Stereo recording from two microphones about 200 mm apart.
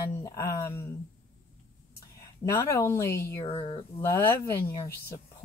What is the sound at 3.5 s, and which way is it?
Speech, 25° left (ahead or behind).